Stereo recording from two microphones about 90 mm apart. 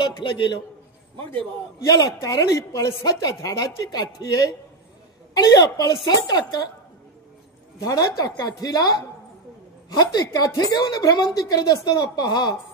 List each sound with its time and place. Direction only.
0.0 s a man's voice: 60° left (ahead or behind)
1.9 s a woman's voice: 45° left (ahead or behind)
7.8 s a woman's voice: 40° left (ahead or behind)